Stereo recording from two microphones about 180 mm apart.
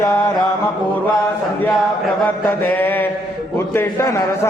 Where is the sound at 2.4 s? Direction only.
10° left (ahead or behind).